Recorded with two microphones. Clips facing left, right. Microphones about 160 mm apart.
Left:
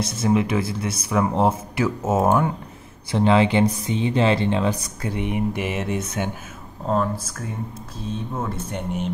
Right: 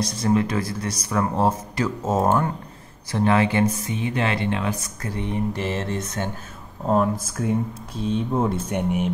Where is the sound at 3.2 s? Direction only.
20° left (ahead or behind).